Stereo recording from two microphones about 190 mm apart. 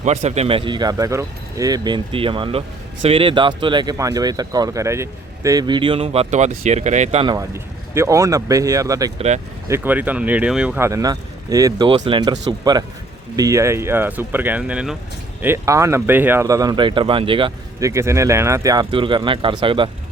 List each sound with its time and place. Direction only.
0.0 s speech: 35° right (ahead or behind)
7.3 s speech: 15° right (ahead or behind)
9.1 s speech: 35° right (ahead or behind)
9.6 s speech: 10° right (ahead or behind); by 17.5 s 25° right (ahead or behind)
17.7 s speech: 15° right (ahead or behind)